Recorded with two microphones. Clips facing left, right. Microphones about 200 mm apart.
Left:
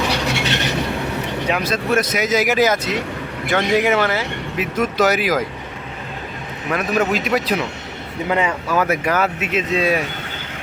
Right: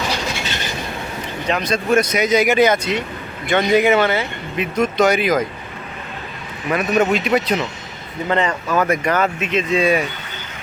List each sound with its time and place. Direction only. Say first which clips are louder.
0.1 s vehicle: left 4 dB; 65° left (ahead or behind)
1.5 s speech: right 3 dB; 5° left (ahead or behind)
6.7 s speech: right 2 dB; centre (ahead or behind)